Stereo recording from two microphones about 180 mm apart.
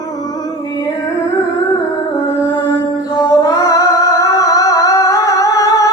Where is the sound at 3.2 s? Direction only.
20° left (ahead or behind).